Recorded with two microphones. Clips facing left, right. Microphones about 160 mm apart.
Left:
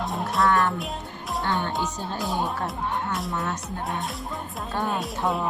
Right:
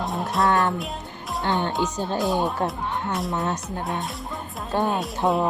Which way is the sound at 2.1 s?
Centre (ahead or behind).